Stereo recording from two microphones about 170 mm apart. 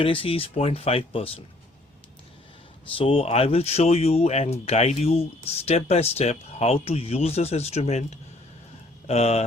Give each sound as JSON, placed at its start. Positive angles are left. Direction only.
{"t": 0.0, "sound": "speech", "side_deg": 30}
{"t": 2.9, "sound": "speech", "side_deg": 30}